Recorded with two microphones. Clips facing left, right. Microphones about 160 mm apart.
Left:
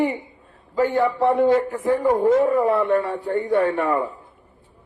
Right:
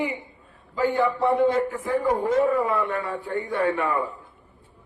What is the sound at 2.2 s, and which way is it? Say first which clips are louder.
Speech: left 4 dB; 40° left (ahead or behind).